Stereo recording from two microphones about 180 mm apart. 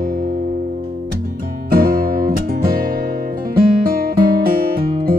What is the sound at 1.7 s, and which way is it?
Music, 55° right (ahead or behind).